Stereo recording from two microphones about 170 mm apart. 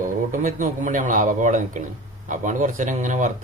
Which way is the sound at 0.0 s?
50° right (ahead or behind).